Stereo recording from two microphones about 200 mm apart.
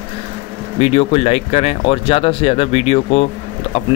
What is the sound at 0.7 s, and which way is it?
Speech, 30° left (ahead or behind).